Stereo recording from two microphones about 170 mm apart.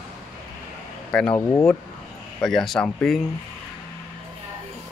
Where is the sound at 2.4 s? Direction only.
Centre (ahead or behind).